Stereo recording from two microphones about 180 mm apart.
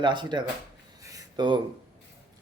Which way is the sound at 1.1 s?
25° right (ahead or behind).